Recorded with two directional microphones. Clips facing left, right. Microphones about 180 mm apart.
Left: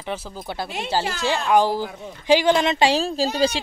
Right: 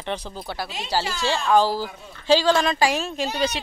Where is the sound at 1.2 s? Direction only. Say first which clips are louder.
Even; 15° left (ahead or behind).